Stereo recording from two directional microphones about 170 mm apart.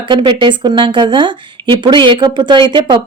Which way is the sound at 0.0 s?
30° right (ahead or behind).